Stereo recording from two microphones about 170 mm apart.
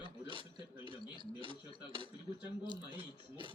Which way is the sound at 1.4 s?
30° right (ahead or behind).